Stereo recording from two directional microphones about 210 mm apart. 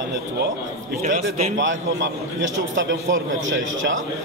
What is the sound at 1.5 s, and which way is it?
A man's voice, 60° right (ahead or behind).